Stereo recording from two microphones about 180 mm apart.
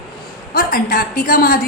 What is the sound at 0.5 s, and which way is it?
A woman's voice, 50° left (ahead or behind).